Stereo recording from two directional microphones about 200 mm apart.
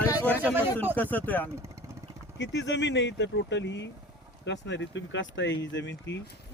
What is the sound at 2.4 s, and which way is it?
Speech, 60° left (ahead or behind).